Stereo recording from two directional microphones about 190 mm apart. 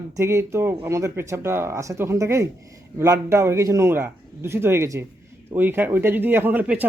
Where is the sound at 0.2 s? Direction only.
15° right (ahead or behind).